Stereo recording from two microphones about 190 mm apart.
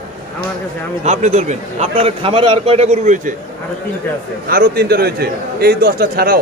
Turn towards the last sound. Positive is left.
turn(degrees=-55)  # may be behind; listen again after turning